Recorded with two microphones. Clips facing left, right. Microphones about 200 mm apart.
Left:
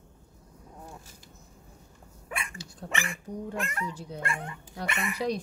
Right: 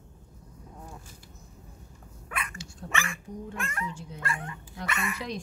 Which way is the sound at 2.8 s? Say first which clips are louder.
Even; 35° left (ahead or behind).